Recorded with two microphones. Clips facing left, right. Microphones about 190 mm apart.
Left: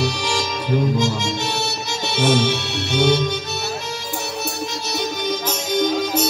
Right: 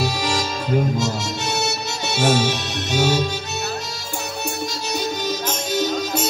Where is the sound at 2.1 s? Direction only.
60° left (ahead or behind).